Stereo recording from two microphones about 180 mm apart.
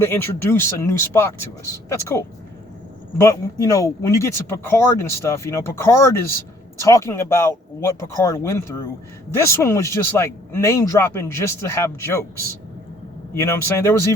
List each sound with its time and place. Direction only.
0.0 s speech: 15° left (ahead or behind)
13.3 s speech: 15° left (ahead or behind)